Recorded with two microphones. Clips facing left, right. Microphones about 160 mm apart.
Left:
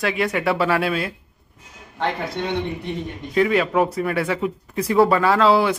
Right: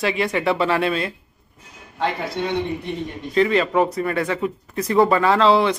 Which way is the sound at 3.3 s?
5° left (ahead or behind).